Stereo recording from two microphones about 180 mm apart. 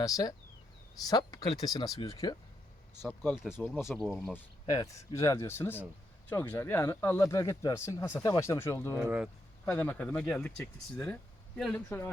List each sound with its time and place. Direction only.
0.0 s speech: 20° left (ahead or behind)
3.8 s speech: centre (ahead or behind)
4.7 s speech: 20° left (ahead or behind)
9.0 s speech: 5° right (ahead or behind)
9.6 s speech: 10° left (ahead or behind)